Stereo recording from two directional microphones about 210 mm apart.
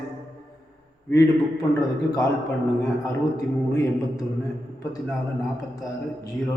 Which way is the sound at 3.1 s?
15° left (ahead or behind).